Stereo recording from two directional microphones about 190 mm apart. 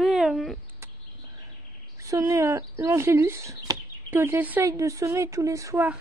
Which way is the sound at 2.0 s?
15° right (ahead or behind).